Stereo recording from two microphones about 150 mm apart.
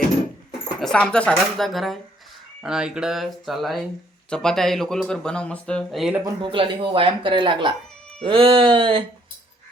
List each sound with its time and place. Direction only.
0.8 s speech: 5° left (ahead or behind)
6.4 s speech: 35° right (ahead or behind)